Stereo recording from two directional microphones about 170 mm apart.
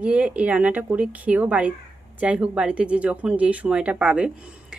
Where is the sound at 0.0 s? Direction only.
5° right (ahead or behind).